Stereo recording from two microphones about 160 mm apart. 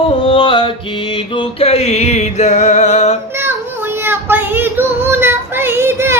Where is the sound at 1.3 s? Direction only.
40° left (ahead or behind).